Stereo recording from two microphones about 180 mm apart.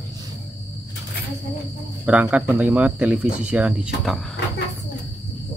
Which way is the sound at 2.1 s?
5° right (ahead or behind).